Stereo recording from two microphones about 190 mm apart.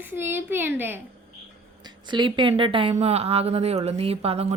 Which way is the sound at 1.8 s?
25° right (ahead or behind).